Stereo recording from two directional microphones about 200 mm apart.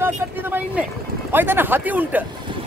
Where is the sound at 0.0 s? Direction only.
10° right (ahead or behind).